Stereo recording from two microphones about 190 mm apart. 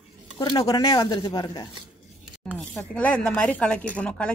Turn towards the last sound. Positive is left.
turn(degrees=5)  # may be behind; listen again after turning